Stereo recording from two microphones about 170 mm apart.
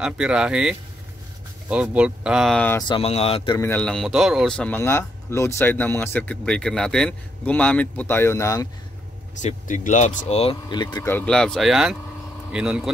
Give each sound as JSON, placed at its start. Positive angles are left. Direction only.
{"t": 0.0, "sound": "speech", "side_deg": -5}
{"t": 2.9, "sound": "speech", "side_deg": 35}
{"t": 3.5, "sound": "speech", "side_deg": 10}
{"t": 9.4, "sound": "speech", "side_deg": 45}
{"t": 11.1, "sound": "speech", "side_deg": 10}